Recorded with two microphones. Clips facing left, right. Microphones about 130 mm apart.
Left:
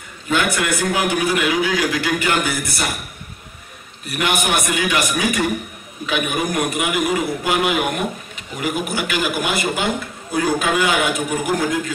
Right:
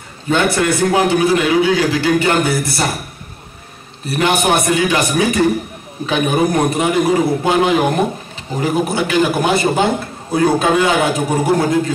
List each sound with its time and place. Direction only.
0.3 s a man's voice: 30° right (ahead or behind)
4.0 s a man's voice: 30° right (ahead or behind)